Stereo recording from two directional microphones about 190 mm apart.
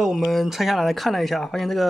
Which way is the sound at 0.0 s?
Centre (ahead or behind).